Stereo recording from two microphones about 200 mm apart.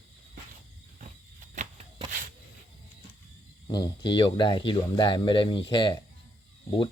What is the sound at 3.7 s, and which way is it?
Speech, 20° left (ahead or behind).